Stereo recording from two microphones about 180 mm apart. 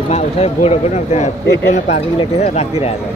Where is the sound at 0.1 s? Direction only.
35° left (ahead or behind).